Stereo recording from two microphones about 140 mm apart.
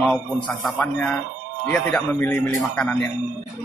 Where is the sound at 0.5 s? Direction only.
10° left (ahead or behind).